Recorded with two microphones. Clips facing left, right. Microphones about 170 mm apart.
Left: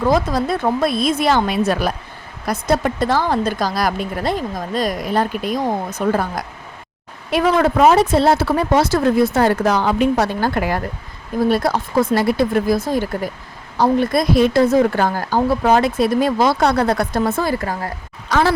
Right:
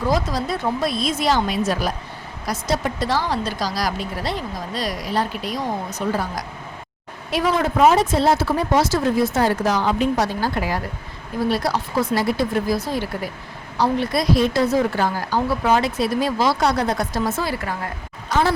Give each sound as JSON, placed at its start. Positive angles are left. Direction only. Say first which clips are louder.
{"t": 0.0, "sound": "a woman's voice", "louder": "left 5 dB", "side_deg": 55}
{"t": 17.6, "sound": "a woman's voice", "louder": "left 3 dB", "side_deg": 40}
{"t": 18.3, "sound": "speech", "louder": "left 3 dB", "side_deg": 90}